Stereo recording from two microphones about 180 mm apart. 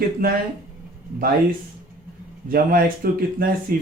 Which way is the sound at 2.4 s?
55° right (ahead or behind).